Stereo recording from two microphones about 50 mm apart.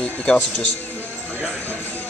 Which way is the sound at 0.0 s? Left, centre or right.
Centre.